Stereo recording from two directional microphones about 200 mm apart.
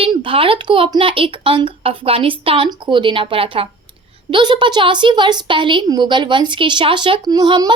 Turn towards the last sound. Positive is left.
turn(degrees=-20)  # may be behind; listen again after turning